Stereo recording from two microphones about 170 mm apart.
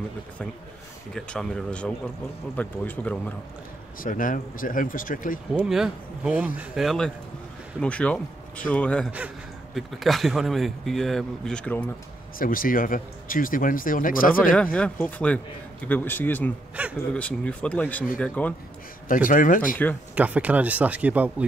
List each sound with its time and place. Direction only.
1.1 s a man's voice: 5° left (ahead or behind)
4.0 s speech: 50° left (ahead or behind)
5.5 s a man's voice: 5° right (ahead or behind)
12.4 s speech: 55° left (ahead or behind)
14.5 s a man's voice: 5° left (ahead or behind)
16.8 s speech: 5° right (ahead or behind)
17.1 s a man's voice: 5° left (ahead or behind)
19.2 s speech: 55° left (ahead or behind)
19.8 s a man's voice: 10° left (ahead or behind)
20.2 s speech: 10° right (ahead or behind)